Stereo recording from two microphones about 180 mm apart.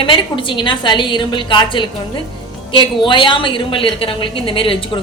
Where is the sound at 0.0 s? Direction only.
30° left (ahead or behind).